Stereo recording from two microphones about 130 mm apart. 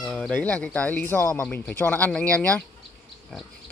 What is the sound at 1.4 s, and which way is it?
Speech, 10° left (ahead or behind).